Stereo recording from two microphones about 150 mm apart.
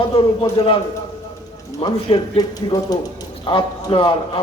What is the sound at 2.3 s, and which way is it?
A man's voice, 25° left (ahead or behind).